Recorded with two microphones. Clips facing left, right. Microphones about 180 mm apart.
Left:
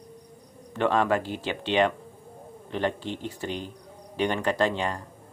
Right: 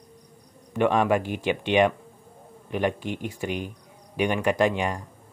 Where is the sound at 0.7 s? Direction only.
15° right (ahead or behind).